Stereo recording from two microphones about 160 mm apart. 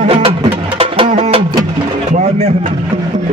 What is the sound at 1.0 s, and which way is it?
Music, 40° right (ahead or behind).